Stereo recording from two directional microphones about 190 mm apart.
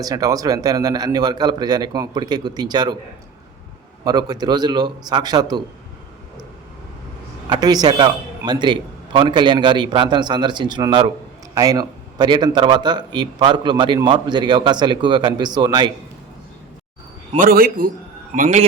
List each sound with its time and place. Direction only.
0.0 s a man's voice: 20° right (ahead or behind)
4.0 s a man's voice: 20° right (ahead or behind)
7.5 s a man's voice: 20° right (ahead or behind)
17.3 s a man's voice: 50° right (ahead or behind)